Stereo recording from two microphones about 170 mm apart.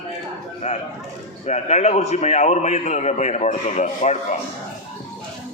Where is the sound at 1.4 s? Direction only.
40° left (ahead or behind).